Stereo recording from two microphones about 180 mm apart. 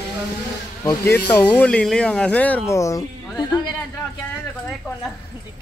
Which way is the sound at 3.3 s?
25° left (ahead or behind).